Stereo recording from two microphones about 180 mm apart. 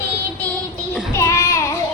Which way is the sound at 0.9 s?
15° left (ahead or behind).